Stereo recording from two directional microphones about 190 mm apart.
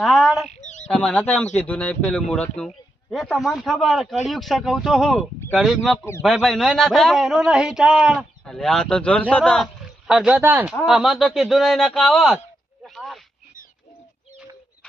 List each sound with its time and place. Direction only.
0.0 s bird: centre (ahead or behind)
0.4 s bird: 40° left (ahead or behind)
0.9 s speech: 5° left (ahead or behind)
12.8 s snake: centre (ahead or behind)